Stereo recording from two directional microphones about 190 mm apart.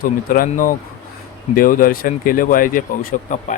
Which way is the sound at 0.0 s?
45° left (ahead or behind).